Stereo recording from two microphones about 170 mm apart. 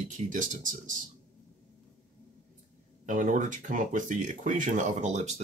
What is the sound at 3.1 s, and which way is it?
Speech, 50° right (ahead or behind).